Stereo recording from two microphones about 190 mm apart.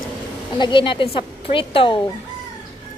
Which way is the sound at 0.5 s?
25° left (ahead or behind).